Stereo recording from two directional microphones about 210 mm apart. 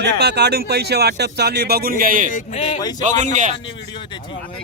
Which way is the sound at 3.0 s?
35° right (ahead or behind).